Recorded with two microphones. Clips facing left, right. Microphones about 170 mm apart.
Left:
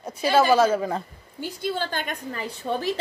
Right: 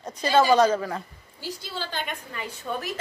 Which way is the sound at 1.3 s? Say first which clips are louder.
Left 6 dB; 55° left (ahead or behind).